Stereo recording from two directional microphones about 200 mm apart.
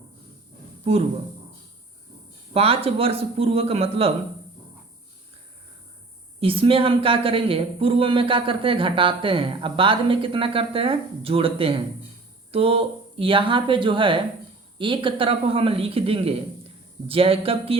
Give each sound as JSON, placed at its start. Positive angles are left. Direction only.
{"t": 2.5, "sound": "a man's voice", "side_deg": -30}
{"t": 6.4, "sound": "a man's voice", "side_deg": -25}